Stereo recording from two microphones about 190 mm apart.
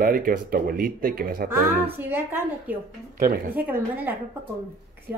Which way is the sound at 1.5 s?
10° right (ahead or behind).